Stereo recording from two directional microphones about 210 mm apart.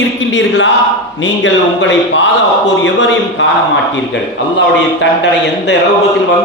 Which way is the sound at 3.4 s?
55° left (ahead or behind).